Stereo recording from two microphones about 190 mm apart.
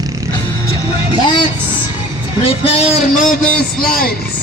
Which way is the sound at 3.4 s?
5° left (ahead or behind).